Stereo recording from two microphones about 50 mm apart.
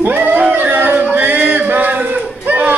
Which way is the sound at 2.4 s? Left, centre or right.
Right.